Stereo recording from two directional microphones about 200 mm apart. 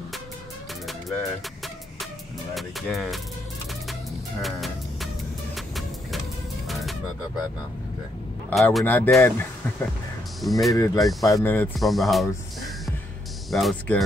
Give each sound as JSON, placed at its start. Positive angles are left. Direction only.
{"t": 2.5, "sound": "speech", "side_deg": 0}
{"t": 4.4, "sound": "music", "side_deg": 0}
{"t": 6.7, "sound": "a sound", "side_deg": 0}
{"t": 8.5, "sound": "speech", "side_deg": 5}
{"t": 10.7, "sound": "speech", "side_deg": 15}
{"t": 13.5, "sound": "speech", "side_deg": 0}